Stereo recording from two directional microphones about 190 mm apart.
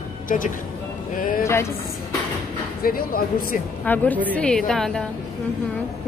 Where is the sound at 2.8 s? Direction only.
50° left (ahead or behind).